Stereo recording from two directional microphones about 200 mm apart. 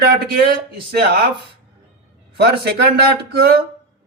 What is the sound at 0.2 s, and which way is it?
A man's voice, 50° right (ahead or behind).